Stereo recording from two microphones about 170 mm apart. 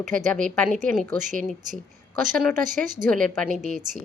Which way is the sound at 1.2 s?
50° right (ahead or behind).